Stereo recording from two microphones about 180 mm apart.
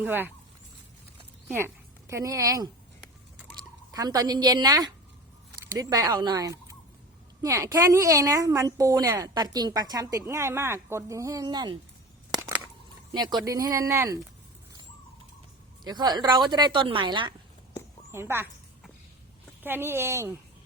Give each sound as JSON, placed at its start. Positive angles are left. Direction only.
{"t": 0.0, "sound": "a woman's voice", "side_deg": -10}
{"t": 1.5, "sound": "speech", "side_deg": -15}
{"t": 3.9, "sound": "a woman's voice", "side_deg": -20}
{"t": 12.3, "sound": "a sound", "side_deg": -20}
{"t": 13.1, "sound": "speech", "side_deg": -25}
{"t": 15.8, "sound": "speech", "side_deg": -25}
{"t": 18.1, "sound": "a woman's voice", "side_deg": -15}
{"t": 19.6, "sound": "a woman's voice", "side_deg": -10}